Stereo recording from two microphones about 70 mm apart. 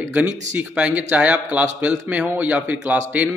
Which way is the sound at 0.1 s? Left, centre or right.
Right.